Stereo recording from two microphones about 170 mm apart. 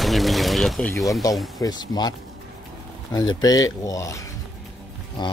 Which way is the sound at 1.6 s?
25° left (ahead or behind).